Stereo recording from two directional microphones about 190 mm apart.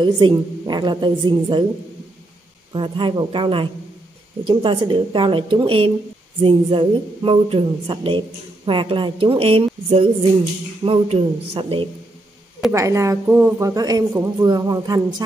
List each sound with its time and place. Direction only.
0.0 s speech: 25° right (ahead or behind)
2.7 s speech: 25° right (ahead or behind)
12.7 s speech: 15° right (ahead or behind)